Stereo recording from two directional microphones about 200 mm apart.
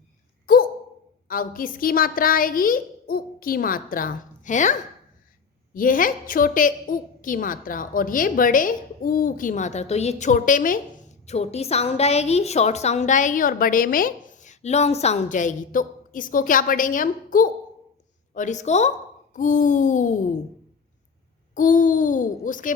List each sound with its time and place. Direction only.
0.4 s a sound: 45° left (ahead or behind)
1.3 s a child's voice: 45° left (ahead or behind)
21.5 s a woman's voice: 40° left (ahead or behind)